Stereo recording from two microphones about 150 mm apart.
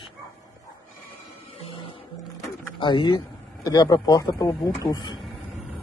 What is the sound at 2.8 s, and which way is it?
Speech, 30° left (ahead or behind).